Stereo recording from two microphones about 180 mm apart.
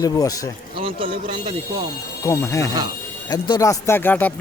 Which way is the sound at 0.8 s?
30° right (ahead or behind).